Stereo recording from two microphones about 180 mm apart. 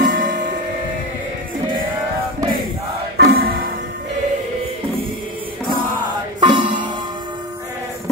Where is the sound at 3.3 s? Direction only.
60° right (ahead or behind).